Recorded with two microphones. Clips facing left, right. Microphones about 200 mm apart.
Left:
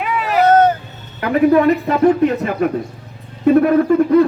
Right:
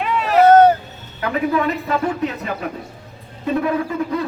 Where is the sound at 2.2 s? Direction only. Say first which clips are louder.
Left 8 dB; 55° left (ahead or behind).